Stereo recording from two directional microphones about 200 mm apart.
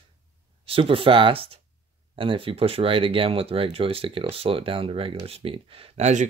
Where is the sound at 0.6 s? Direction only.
25° right (ahead or behind).